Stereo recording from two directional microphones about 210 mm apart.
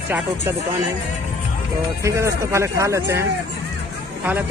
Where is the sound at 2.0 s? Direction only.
15° right (ahead or behind).